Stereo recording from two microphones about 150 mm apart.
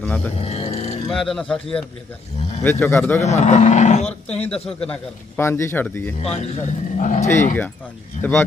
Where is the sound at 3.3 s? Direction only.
50° left (ahead or behind).